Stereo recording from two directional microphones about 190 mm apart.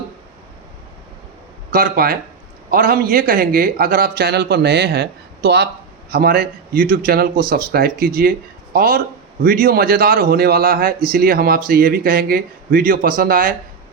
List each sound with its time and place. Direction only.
1.7 s a man's voice: 50° right (ahead or behind)